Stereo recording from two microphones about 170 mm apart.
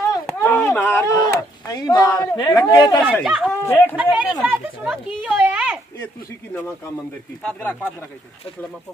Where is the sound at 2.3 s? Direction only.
20° left (ahead or behind).